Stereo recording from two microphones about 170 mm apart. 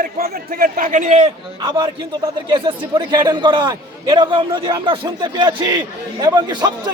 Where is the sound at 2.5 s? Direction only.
25° right (ahead or behind).